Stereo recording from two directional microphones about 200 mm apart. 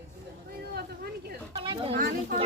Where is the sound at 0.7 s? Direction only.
50° right (ahead or behind).